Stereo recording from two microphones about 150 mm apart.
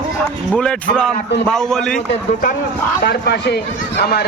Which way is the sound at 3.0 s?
90° left.